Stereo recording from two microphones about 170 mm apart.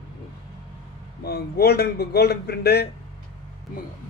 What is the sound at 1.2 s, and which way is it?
A man's voice, 65° left (ahead or behind).